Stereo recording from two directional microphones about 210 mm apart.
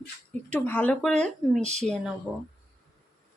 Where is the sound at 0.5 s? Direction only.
5° left (ahead or behind).